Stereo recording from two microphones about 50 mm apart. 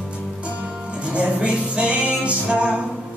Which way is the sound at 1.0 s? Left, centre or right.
Right.